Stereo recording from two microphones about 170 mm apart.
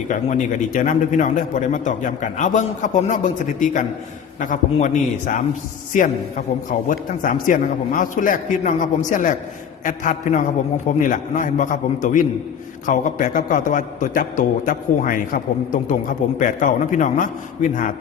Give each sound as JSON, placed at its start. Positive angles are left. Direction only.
{"t": 0.1, "sound": "a man's voice", "side_deg": 45}